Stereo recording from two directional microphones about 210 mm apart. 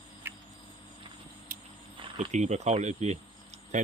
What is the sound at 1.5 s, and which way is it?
Vehicle, 40° right (ahead or behind).